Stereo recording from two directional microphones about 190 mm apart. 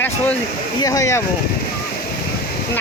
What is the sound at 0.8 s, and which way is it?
Speech, 15° left (ahead or behind).